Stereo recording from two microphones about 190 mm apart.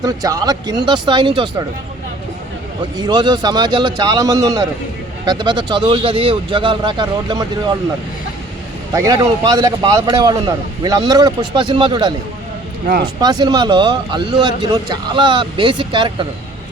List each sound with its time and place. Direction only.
0.0 s speech: 20° right (ahead or behind)
3.0 s speech: 25° right (ahead or behind)
8.9 s speech: 15° right (ahead or behind)
13.1 s speech: 20° right (ahead or behind)